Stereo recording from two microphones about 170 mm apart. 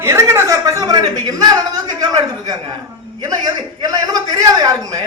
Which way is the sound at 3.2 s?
20° right (ahead or behind).